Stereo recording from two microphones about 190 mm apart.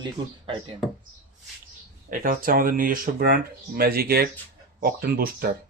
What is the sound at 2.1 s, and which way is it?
Speech, 50° right (ahead or behind).